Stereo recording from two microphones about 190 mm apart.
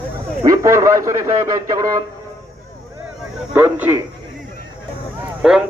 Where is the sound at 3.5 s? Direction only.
10° right (ahead or behind).